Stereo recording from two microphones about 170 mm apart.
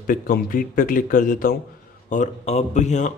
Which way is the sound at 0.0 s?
55° left (ahead or behind).